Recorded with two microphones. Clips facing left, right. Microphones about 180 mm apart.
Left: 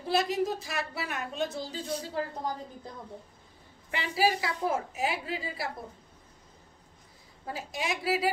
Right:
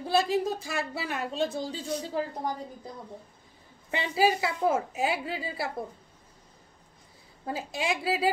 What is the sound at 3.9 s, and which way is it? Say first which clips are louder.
Speech: right 2 dB; 25° right (ahead or behind).